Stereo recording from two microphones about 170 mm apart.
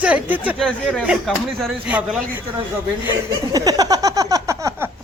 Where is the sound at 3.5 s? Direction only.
20° right (ahead or behind).